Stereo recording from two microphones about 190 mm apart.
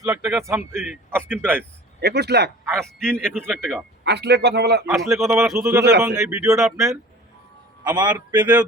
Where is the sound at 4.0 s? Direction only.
60° right (ahead or behind).